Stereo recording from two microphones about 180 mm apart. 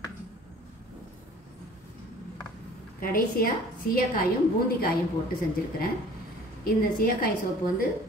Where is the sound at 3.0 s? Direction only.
55° left (ahead or behind).